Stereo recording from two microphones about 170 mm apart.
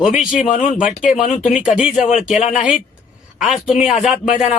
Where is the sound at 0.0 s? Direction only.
5° right (ahead or behind).